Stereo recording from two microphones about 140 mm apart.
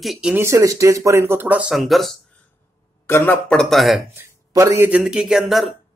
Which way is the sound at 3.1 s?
15° left (ahead or behind).